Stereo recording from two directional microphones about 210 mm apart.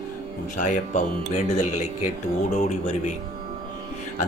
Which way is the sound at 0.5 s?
35° left (ahead or behind).